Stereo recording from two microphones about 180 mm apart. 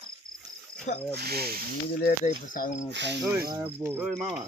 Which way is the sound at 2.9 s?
75° right (ahead or behind).